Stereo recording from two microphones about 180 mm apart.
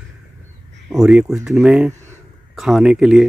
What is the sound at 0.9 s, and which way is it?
Speech, centre (ahead or behind).